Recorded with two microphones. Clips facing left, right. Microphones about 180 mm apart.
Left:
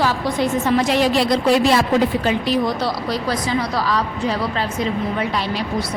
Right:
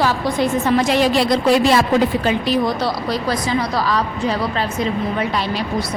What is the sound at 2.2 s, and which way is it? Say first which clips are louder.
A woman's voice: right 1 dB; 70° right (ahead or behind).